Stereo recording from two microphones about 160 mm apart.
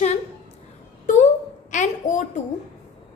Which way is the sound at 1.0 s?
50° left (ahead or behind).